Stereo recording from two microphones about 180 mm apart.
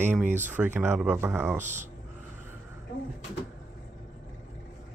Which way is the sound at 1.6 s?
40° right (ahead or behind).